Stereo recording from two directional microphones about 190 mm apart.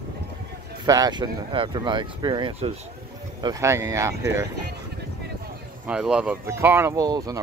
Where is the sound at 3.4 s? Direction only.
15° right (ahead or behind).